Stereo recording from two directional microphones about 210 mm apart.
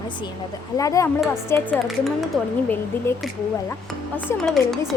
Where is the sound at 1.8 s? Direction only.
Centre (ahead or behind).